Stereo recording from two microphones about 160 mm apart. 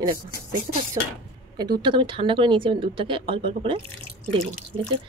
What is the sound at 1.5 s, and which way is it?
Speech, 25° right (ahead or behind).